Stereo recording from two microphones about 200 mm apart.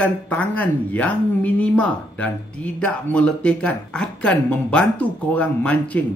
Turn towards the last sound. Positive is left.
turn(degrees=5)  # may be behind; listen again after turning